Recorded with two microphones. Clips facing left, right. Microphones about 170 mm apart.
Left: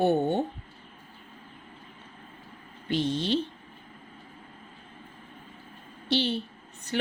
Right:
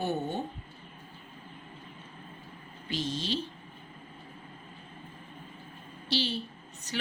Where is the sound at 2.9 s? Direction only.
60° left (ahead or behind).